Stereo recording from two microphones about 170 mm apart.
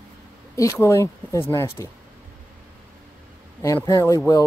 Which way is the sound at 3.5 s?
20° left (ahead or behind).